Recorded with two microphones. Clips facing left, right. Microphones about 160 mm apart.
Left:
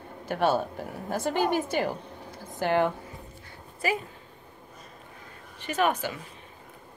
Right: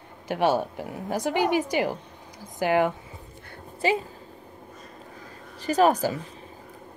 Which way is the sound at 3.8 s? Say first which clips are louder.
Right 5 dB; 25° right (ahead or behind).